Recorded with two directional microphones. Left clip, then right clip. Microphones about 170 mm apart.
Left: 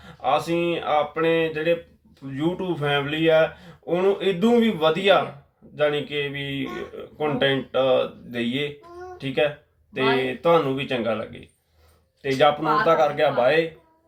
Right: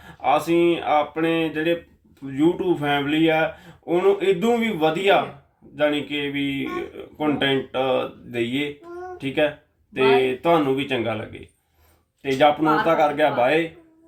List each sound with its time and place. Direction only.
0.0 s speech: 20° right (ahead or behind)